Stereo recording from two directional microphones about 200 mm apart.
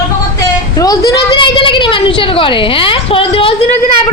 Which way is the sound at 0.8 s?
15° left (ahead or behind).